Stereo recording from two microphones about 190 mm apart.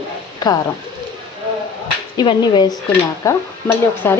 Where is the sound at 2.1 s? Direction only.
25° left (ahead or behind).